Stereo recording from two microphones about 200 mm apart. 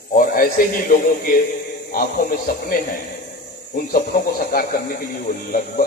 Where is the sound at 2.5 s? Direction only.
45° left (ahead or behind).